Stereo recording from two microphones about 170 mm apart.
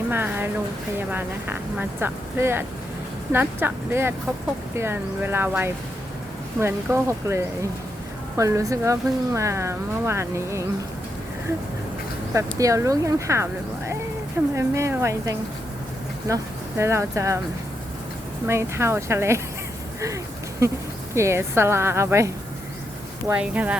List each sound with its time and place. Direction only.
0.1 s speech: 10° right (ahead or behind)
12.3 s speech: 20° right (ahead or behind)
18.4 s speech: 15° right (ahead or behind)
20.6 s speech: 15° right (ahead or behind)
23.3 s speech: 10° right (ahead or behind)